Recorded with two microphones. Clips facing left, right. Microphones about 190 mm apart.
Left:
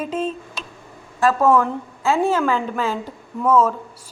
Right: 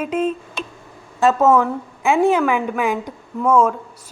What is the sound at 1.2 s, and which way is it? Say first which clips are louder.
Speech: right 2 dB; 25° right (ahead or behind).